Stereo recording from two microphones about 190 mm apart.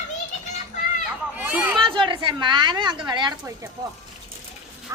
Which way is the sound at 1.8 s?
25° right (ahead or behind).